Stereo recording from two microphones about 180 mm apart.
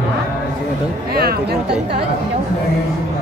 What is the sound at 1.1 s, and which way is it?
Speech, 60° right (ahead or behind).